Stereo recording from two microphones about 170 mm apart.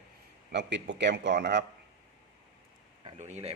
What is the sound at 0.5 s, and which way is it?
A man's voice, 90° right.